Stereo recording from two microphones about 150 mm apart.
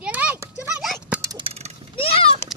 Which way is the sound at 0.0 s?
10° right (ahead or behind).